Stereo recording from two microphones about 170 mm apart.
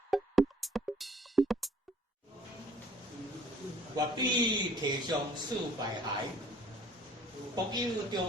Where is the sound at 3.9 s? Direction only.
25° right (ahead or behind).